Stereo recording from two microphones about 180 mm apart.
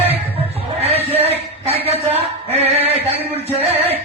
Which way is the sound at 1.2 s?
35° right (ahead or behind).